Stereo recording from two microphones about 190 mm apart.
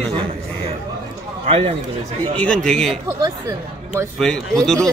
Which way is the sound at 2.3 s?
5° left (ahead or behind).